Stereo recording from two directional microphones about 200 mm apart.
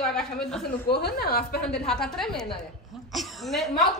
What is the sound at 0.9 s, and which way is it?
Speech, 55° left (ahead or behind).